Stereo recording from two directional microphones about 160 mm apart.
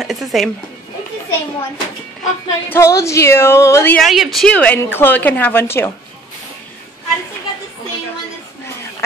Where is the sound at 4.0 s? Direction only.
Centre (ahead or behind); by 5.9 s 15° left (ahead or behind).